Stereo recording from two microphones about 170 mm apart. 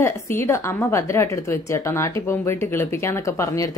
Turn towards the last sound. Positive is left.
turn(degrees=20)  # may be behind; listen again after turning